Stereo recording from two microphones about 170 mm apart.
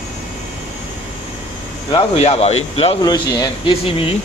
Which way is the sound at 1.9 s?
35° left (ahead or behind).